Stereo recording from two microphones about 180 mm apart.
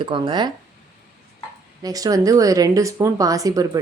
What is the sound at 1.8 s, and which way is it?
Speech, 20° right (ahead or behind).